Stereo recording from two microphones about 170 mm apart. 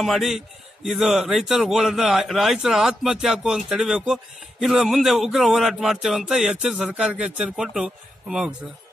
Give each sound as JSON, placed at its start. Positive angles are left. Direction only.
{"t": 0.0, "sound": "a man's voice", "side_deg": 0}